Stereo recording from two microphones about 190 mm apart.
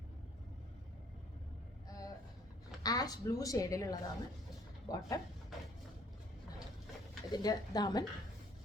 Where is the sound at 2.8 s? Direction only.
20° left (ahead or behind).